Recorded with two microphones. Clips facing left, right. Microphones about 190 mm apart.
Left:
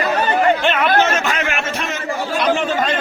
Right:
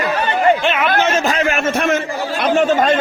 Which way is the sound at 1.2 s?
35° right (ahead or behind).